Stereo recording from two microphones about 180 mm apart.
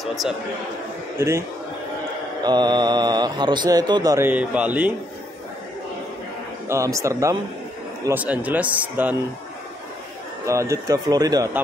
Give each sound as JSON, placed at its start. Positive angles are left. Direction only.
{"t": 0.0, "sound": "a man's voice", "side_deg": 0}
{"t": 1.1, "sound": "a man's voice", "side_deg": -15}
{"t": 2.4, "sound": "speech", "side_deg": -25}
{"t": 4.3, "sound": "speech", "side_deg": -5}
{"t": 6.7, "sound": "speech", "side_deg": -15}
{"t": 10.4, "sound": "speech", "side_deg": -15}